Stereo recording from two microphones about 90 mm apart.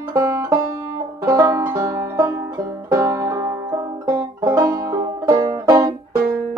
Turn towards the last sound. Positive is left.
turn(degrees=-45)  # may be behind; listen again after turning